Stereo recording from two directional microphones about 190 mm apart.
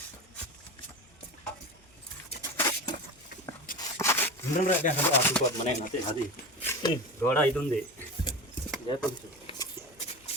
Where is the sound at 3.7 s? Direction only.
15° left (ahead or behind).